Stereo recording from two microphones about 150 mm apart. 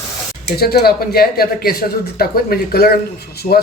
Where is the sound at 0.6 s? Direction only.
90° left.